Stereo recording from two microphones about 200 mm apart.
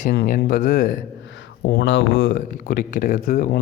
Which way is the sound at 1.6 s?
65° left (ahead or behind).